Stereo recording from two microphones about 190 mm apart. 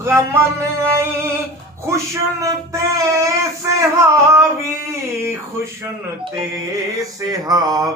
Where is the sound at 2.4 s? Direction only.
15° right (ahead or behind).